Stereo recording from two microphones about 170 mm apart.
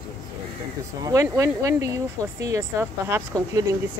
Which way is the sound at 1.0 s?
20° right (ahead or behind).